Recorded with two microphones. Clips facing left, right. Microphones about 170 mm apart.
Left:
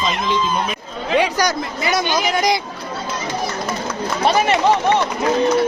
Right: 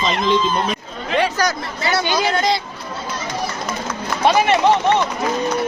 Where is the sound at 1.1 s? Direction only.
15° left (ahead or behind).